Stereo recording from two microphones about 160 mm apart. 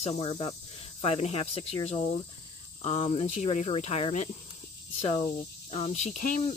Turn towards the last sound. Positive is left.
turn(degrees=45)  # may be behind; listen again after turning